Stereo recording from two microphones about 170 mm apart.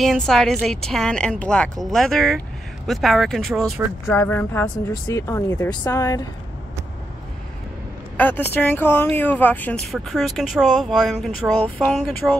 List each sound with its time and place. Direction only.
0.0 s speech: centre (ahead or behind)
4.1 s speech: 15° left (ahead or behind)
8.2 s speech: 10° left (ahead or behind)